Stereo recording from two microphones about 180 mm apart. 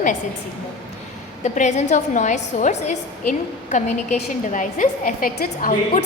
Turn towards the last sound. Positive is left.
turn(degrees=55)  # may be behind; listen again after turning